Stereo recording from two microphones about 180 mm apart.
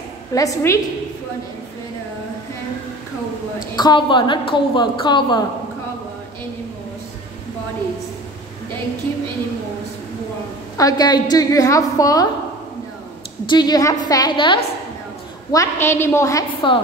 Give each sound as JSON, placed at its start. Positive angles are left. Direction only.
{"t": 0.3, "sound": "a woman's voice", "side_deg": 20}
{"t": 3.7, "sound": "a woman's voice", "side_deg": 25}
{"t": 10.8, "sound": "a woman's voice", "side_deg": 20}
{"t": 13.5, "sound": "a woman's voice", "side_deg": 20}
{"t": 15.5, "sound": "a woman's voice", "side_deg": 15}